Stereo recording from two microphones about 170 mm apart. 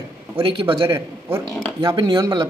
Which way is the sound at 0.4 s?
30° right (ahead or behind).